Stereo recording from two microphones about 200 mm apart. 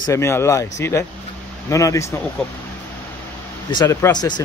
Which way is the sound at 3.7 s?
15° left (ahead or behind).